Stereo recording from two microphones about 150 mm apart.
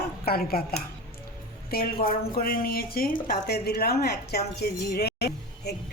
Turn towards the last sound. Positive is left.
turn(degrees=90)